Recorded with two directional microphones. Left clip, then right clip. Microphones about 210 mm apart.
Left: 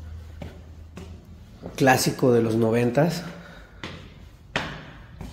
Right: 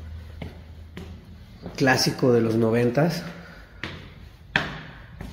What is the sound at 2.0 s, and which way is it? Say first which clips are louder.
A man's voice: even; 10° left (ahead or behind).